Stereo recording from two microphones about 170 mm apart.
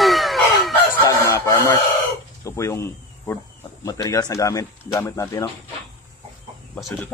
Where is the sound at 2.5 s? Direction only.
15° left (ahead or behind).